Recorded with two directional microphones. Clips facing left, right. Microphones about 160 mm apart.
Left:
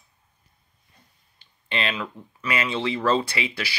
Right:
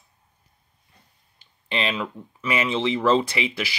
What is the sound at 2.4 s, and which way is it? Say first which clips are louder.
Speech: right 3 dB; 20° right (ahead or behind).